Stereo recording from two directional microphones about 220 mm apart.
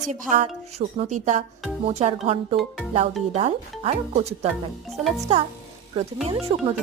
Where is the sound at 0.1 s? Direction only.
35° right (ahead or behind).